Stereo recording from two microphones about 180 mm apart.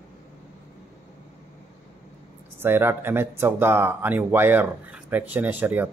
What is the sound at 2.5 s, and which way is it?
Speech, 10° right (ahead or behind).